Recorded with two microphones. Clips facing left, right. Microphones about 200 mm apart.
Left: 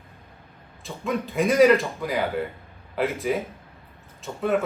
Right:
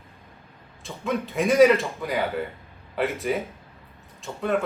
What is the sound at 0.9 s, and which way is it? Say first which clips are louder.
Speech: even; centre (ahead or behind).